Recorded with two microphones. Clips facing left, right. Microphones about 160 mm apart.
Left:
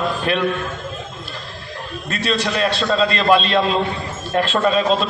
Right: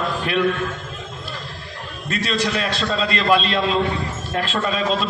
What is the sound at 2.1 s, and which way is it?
A man's voice, 30° left (ahead or behind).